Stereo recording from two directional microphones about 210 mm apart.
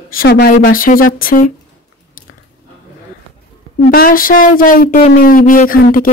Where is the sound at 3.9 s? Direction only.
40° left (ahead or behind).